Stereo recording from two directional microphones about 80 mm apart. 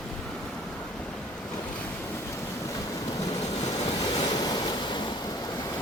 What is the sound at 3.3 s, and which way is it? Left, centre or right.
Waves, left.